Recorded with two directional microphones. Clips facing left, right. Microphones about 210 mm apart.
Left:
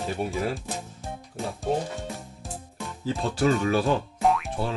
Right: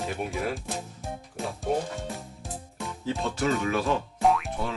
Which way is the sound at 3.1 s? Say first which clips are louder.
Left 3 dB; 35° left (ahead or behind).